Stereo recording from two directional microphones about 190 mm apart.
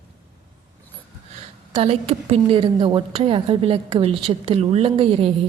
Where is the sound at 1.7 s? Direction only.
30° right (ahead or behind).